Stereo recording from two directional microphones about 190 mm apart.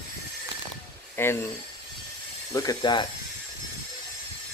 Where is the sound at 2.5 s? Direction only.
15° left (ahead or behind).